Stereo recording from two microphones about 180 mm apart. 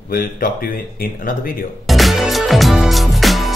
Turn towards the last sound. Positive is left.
turn(degrees=0)  # may be behind; listen again after turning